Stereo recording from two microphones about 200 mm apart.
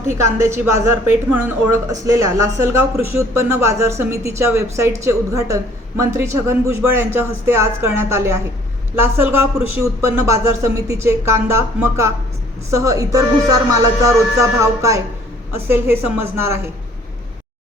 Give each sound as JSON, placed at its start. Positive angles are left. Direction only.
{"t": 0.3, "sound": "speech", "side_deg": -15}